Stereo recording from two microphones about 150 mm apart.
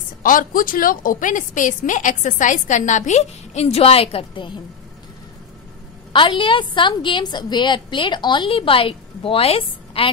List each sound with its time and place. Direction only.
0.2 s a woman's voice: 65° left (ahead or behind); by 4.6 s 35° left (ahead or behind)
6.1 s a woman's voice: 35° left (ahead or behind)